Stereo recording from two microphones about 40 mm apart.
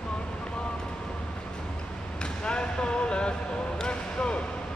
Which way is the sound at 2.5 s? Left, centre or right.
Left.